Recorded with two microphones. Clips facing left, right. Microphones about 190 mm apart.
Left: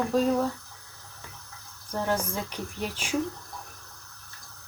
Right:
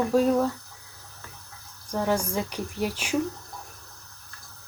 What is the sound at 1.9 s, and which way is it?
Speech, 10° right (ahead or behind).